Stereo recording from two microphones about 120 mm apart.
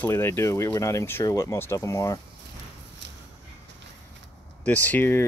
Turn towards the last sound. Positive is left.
turn(degrees=15)  # may be behind; listen again after turning